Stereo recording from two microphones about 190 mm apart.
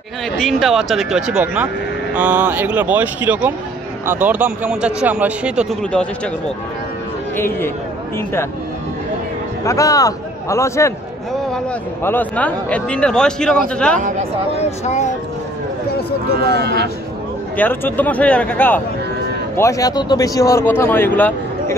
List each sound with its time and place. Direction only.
0.4 s speech: centre (ahead or behind)
7.3 s speech: 10° left (ahead or behind)
9.7 s speech: 15° left (ahead or behind)
14.5 s speech: 35° left (ahead or behind)
16.4 s speech: 60° right (ahead or behind)
17.6 s speech: 10° left (ahead or behind)